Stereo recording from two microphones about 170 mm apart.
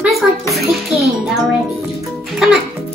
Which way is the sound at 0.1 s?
Centre (ahead or behind).